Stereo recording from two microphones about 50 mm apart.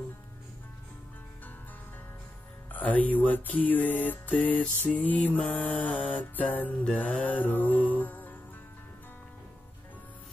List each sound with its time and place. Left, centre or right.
2.7 s music: left